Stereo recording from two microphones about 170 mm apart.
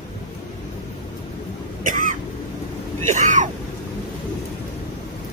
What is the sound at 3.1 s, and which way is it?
Speech, 50° right (ahead or behind).